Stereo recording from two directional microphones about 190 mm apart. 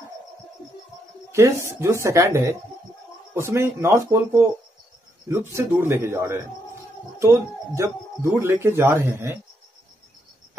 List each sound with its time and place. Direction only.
1.3 s speech: 15° right (ahead or behind)